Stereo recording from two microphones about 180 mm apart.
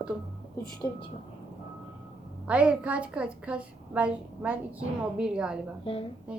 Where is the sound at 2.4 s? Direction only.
5° right (ahead or behind).